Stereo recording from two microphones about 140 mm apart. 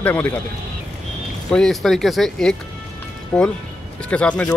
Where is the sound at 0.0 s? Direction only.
10° left (ahead or behind).